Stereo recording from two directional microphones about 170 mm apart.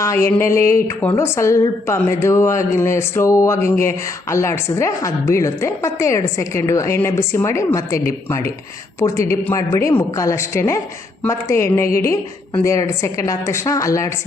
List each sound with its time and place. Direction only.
0.0 s a woman's voice: 15° left (ahead or behind)